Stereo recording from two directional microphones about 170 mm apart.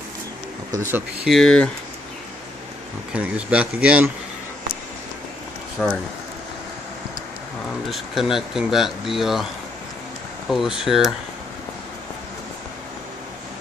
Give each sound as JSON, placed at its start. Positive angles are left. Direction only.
{"t": 0.9, "sound": "speech", "side_deg": 0}
{"t": 3.1, "sound": "speech", "side_deg": -5}
{"t": 5.8, "sound": "speech", "side_deg": 5}
{"t": 7.9, "sound": "speech", "side_deg": 0}
{"t": 10.5, "sound": "speech", "side_deg": 0}